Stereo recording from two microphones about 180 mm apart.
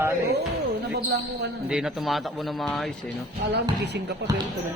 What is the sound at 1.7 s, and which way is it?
Speech, 5° right (ahead or behind).